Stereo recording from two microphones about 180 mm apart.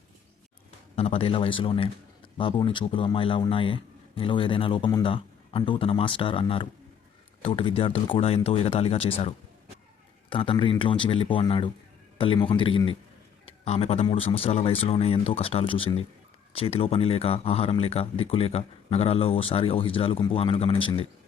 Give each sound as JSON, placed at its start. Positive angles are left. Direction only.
{"t": 0.9, "sound": "speech", "side_deg": 35}